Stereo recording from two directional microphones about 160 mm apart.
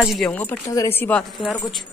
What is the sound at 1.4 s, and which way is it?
Speech, centre (ahead or behind).